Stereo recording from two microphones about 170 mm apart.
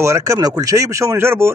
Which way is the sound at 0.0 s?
20° right (ahead or behind).